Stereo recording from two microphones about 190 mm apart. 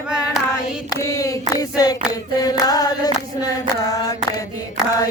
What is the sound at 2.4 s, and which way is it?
Chant, 20° left (ahead or behind).